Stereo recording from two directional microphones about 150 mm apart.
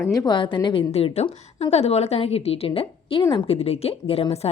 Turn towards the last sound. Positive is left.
turn(degrees=40)  # may be behind; listen again after turning